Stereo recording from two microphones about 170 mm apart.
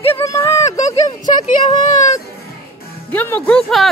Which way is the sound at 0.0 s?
15° left (ahead or behind).